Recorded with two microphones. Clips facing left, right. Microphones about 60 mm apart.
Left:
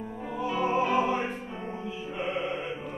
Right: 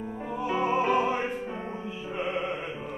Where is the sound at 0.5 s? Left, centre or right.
Right.